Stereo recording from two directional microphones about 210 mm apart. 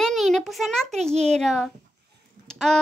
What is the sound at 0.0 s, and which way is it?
A child's voice, centre (ahead or behind).